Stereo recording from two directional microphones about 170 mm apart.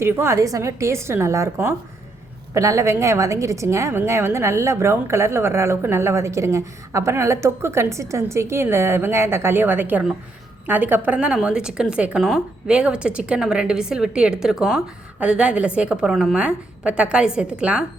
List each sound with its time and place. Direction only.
0.0 s a woman's voice: 15° right (ahead or behind)